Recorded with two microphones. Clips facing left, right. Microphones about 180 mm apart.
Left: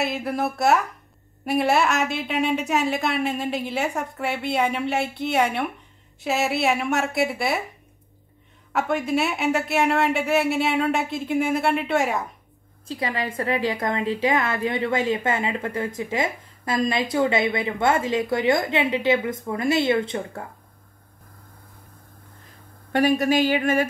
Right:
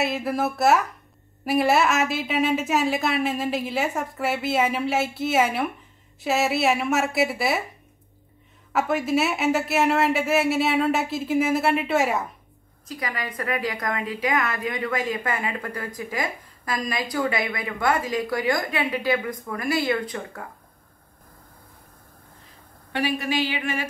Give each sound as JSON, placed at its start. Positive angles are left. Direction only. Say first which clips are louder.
{"t": 0.0, "sound": "a woman's voice", "louder": "right 1 dB", "side_deg": 0}
{"t": 8.7, "sound": "a woman's voice", "louder": "even", "side_deg": 0}
{"t": 12.8, "sound": "a woman's voice", "louder": "left 4 dB", "side_deg": 30}
{"t": 22.9, "sound": "speech", "louder": "left 6 dB", "side_deg": 45}